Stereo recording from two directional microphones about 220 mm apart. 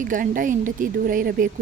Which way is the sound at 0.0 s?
35° right (ahead or behind).